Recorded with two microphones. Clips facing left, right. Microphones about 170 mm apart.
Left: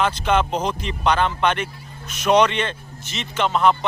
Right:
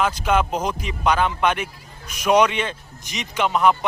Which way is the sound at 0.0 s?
10° right (ahead or behind).